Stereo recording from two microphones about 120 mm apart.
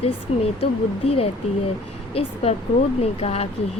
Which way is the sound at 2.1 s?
55° left (ahead or behind).